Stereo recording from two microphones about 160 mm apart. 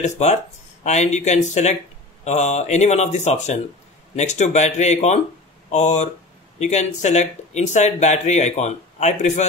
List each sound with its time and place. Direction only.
0.0 s speech: 45° left (ahead or behind)